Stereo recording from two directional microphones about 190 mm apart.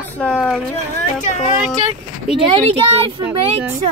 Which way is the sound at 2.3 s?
25° right (ahead or behind).